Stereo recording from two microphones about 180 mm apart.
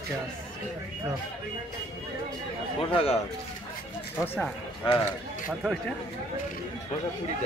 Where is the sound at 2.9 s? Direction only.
35° left (ahead or behind).